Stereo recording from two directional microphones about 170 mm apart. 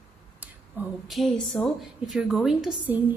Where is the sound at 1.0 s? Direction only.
Centre (ahead or behind).